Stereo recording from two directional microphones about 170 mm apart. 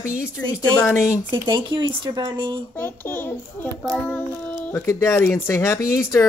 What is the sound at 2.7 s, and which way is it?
Speech, 10° left (ahead or behind).